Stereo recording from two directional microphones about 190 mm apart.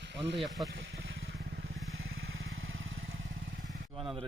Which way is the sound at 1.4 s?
65° right (ahead or behind).